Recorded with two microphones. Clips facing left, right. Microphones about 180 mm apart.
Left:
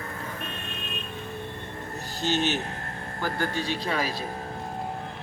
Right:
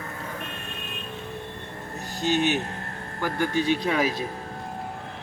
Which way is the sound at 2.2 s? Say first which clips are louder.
Right 3 dB; 15° right (ahead or behind).